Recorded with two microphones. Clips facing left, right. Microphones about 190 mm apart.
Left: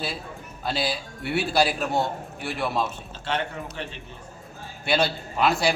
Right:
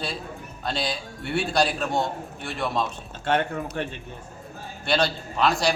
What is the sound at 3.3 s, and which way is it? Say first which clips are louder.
Speech: right 5 dB; 55° right (ahead or behind).